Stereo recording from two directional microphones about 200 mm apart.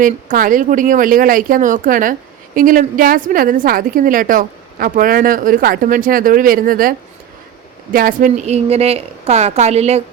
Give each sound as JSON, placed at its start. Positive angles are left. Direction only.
{"t": 0.0, "sound": "a woman's voice", "side_deg": -40}
{"t": 7.9, "sound": "a woman's voice", "side_deg": -45}